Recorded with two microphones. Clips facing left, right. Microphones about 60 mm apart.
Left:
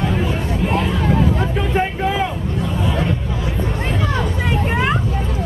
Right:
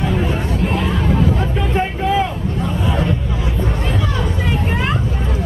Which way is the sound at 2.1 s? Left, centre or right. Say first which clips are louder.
Right 4 dB; left.